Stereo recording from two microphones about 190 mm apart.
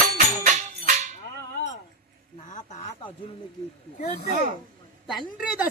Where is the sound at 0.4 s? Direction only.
40° right (ahead or behind).